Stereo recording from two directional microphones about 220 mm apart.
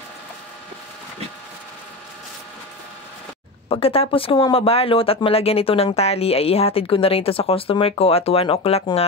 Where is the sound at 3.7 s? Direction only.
25° left (ahead or behind).